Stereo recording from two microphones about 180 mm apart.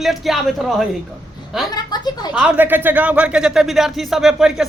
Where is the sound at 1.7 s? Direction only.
20° left (ahead or behind).